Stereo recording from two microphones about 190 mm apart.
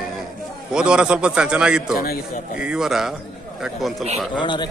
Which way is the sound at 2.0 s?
50° left (ahead or behind).